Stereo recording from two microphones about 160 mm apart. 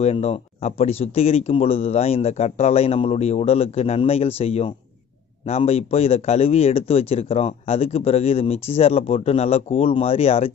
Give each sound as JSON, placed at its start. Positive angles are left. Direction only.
{"t": 0.0, "sound": "a man's voice", "side_deg": 40}